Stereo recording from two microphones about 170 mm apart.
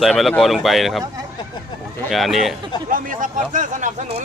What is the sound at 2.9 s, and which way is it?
Speech, 55° right (ahead or behind).